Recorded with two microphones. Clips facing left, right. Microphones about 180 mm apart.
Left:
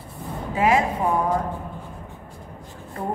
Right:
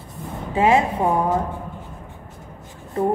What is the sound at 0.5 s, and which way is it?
Speech, 25° right (ahead or behind).